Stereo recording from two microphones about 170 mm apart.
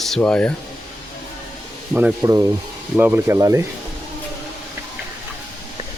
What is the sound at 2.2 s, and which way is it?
Speech, 20° right (ahead or behind).